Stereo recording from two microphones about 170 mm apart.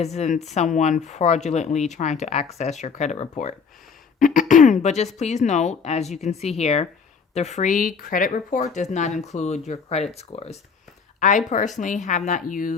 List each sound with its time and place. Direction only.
0.0 s speech: 40° left (ahead or behind)